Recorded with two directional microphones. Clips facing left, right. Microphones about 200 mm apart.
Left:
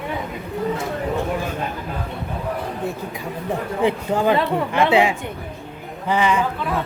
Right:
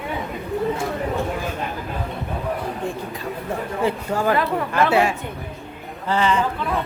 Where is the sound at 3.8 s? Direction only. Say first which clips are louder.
Left 3 dB; 20° left (ahead or behind).